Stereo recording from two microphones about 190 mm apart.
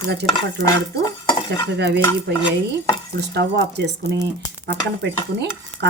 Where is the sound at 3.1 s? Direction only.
60° right (ahead or behind).